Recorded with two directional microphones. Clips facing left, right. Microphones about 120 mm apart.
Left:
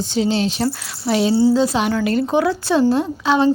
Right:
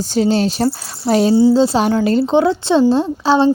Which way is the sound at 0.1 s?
45° right (ahead or behind).